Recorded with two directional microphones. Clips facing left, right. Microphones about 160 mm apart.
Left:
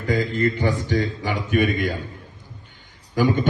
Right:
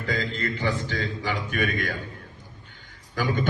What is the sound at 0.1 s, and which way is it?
Speech, 45° left (ahead or behind).